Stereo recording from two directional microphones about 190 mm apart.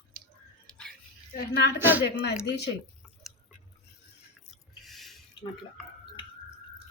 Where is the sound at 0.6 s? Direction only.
5° left (ahead or behind).